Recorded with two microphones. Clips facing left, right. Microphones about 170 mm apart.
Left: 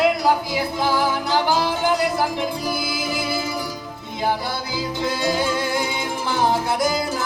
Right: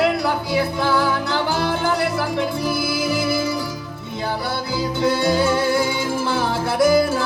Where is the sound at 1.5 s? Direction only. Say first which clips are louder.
Even; 65° right (ahead or behind).